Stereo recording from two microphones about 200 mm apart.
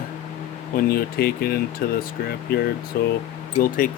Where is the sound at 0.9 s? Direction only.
50° left (ahead or behind).